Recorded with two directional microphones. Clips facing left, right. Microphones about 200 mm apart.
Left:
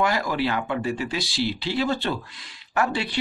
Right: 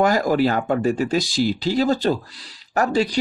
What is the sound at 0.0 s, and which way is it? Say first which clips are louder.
Speech: right 6 dB; 45° right (ahead or behind).